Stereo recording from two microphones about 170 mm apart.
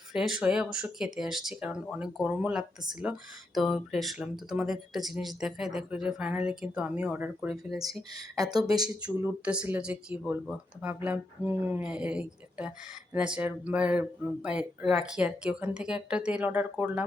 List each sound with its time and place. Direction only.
0.1 s speech: 5° right (ahead or behind)
8.1 s speech: 25° right (ahead or behind)
9.0 s speech: 10° right (ahead or behind)